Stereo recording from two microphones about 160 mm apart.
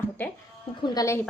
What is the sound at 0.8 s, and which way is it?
Speech, 20° left (ahead or behind).